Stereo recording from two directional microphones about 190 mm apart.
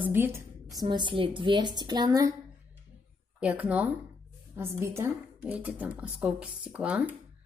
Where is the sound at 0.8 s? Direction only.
25° right (ahead or behind).